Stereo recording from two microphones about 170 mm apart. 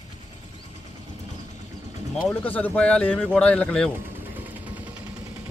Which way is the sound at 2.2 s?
10° left (ahead or behind).